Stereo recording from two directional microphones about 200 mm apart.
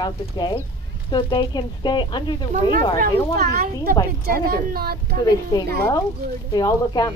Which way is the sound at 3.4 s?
50° right (ahead or behind).